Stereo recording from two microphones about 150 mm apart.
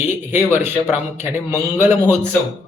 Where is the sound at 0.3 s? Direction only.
15° right (ahead or behind).